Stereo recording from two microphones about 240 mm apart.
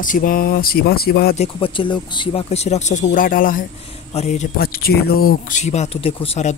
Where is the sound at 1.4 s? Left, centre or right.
Left.